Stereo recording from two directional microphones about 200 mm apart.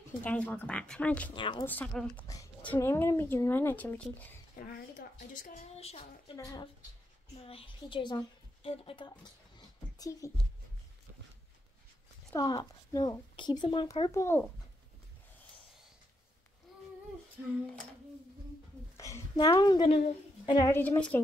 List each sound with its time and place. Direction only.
0.2 s speech: 10° left (ahead or behind)
1.3 s speech: 25° left (ahead or behind)
1.7 s speech: 10° left (ahead or behind)
4.6 s a woman's voice: 45° left (ahead or behind); by 10.3 s 15° left (ahead or behind)
12.3 s speech: 20° left (ahead or behind)
14.1 s speech: 10° left (ahead or behind)
18.9 s a woman's voice: 15° left (ahead or behind)